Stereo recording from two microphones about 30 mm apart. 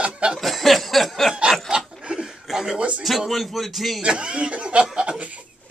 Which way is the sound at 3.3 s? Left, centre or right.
Centre.